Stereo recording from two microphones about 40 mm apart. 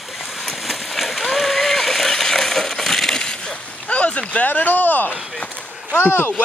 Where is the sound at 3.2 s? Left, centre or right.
Left.